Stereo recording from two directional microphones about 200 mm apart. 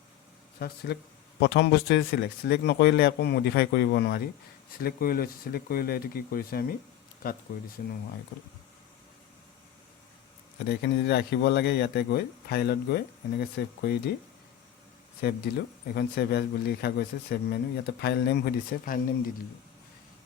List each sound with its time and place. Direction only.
0.6 s speech: 50° left (ahead or behind)
10.7 s speech: 55° left (ahead or behind)
15.2 s speech: 55° left (ahead or behind)